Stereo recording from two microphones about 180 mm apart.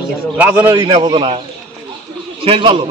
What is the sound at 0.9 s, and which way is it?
Speech, 25° right (ahead or behind).